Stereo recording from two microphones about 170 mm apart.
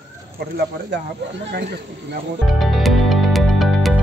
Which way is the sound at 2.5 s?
Centre (ahead or behind).